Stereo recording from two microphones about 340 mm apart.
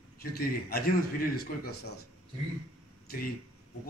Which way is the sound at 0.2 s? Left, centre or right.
Left.